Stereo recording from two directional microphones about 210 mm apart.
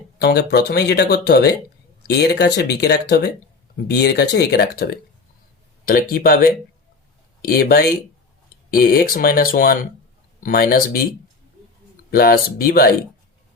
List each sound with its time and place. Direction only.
0.2 s speech: 50° left (ahead or behind)
12.1 s speech: 45° left (ahead or behind)